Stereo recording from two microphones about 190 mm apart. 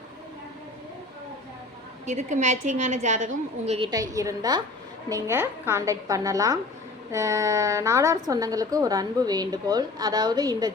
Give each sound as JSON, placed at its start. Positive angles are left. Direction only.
{"t": 2.0, "sound": "a woman's voice", "side_deg": -40}
{"t": 3.8, "sound": "a woman's voice", "side_deg": -20}